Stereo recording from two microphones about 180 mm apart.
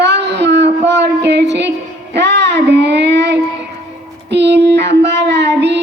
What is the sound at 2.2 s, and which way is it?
Child singing, 75° right (ahead or behind).